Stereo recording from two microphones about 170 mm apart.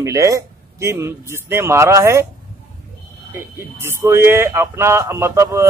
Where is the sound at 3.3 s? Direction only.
15° right (ahead or behind).